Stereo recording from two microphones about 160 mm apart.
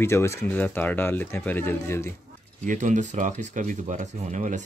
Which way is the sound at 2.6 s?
50° right (ahead or behind).